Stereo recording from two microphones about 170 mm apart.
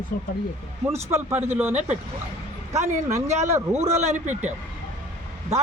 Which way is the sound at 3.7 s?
40° right (ahead or behind).